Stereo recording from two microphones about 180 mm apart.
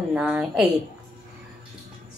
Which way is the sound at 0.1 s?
5° right (ahead or behind).